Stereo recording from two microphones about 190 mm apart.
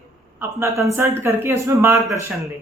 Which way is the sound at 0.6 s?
15° right (ahead or behind).